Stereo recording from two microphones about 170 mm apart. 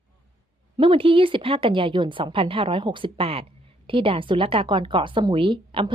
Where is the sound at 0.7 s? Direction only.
30° right (ahead or behind).